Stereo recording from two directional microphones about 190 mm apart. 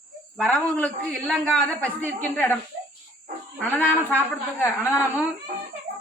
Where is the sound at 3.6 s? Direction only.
10° left (ahead or behind).